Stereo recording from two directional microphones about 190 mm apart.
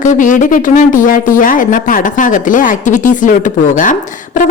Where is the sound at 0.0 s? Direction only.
45° left (ahead or behind).